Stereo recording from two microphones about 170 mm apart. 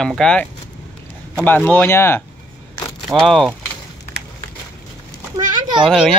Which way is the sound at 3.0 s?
Centre (ahead or behind).